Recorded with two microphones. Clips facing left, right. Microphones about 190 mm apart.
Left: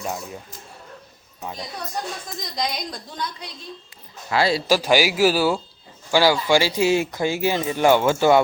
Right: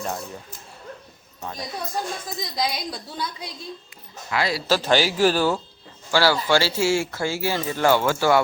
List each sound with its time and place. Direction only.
0.0 s speech: 10° left (ahead or behind)
2.4 s a woman's voice: 5° right (ahead or behind)
4.3 s speech: 30° left (ahead or behind)
4.6 s speech: 10° left (ahead or behind)